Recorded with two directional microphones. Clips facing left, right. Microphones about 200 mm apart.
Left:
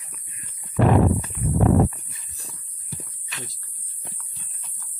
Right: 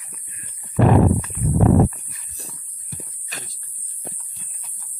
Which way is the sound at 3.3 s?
40° right (ahead or behind).